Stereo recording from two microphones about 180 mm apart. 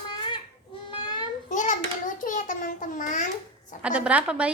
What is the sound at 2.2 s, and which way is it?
A child's voice, 45° left (ahead or behind).